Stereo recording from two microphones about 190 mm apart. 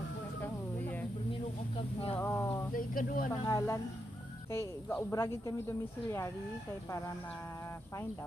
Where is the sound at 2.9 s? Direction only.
50° left (ahead or behind).